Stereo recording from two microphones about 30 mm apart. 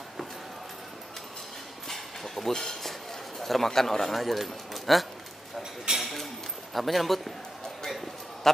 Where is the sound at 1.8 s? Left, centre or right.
Centre.